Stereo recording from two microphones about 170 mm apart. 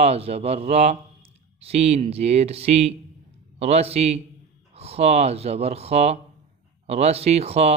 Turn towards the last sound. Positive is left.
turn(degrees=-35)  # may be behind; listen again after turning